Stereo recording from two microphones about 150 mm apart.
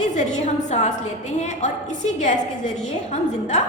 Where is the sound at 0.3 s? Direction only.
50° left (ahead or behind).